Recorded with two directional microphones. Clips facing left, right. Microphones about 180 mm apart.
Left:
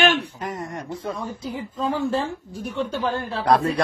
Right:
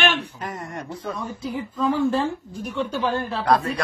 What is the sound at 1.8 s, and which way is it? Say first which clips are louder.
A man's voice: right 3 dB; 25° left (ahead or behind).